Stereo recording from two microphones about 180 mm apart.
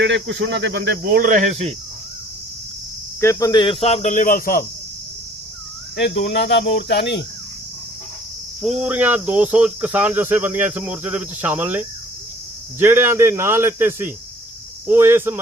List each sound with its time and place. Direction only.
0.0 s speech: 90° right; by 1.7 s 40° right (ahead or behind)
3.2 s speech: 15° left (ahead or behind); by 4.6 s 50° left (ahead or behind)
6.0 s cricket: 65° left (ahead or behind)
8.8 s cricket: 10° right (ahead or behind)